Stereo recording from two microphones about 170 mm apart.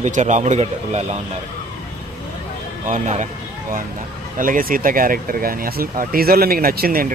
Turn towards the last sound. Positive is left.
turn(degrees=-60)  # may be behind; listen again after turning